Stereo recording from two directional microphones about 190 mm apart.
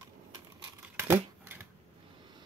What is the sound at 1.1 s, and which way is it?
Scissors, 10° right (ahead or behind).